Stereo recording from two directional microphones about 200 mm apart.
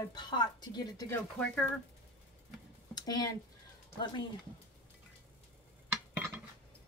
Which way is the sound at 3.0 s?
20° left (ahead or behind).